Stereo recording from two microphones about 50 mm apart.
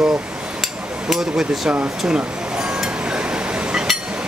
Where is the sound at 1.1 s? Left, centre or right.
Centre.